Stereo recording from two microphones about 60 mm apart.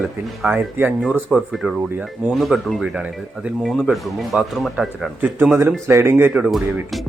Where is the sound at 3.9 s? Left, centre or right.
Centre.